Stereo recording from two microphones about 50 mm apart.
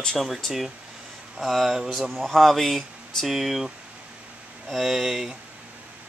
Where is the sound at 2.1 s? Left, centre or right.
Centre.